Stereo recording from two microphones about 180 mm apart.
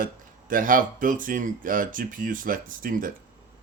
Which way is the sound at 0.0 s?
50° right (ahead or behind).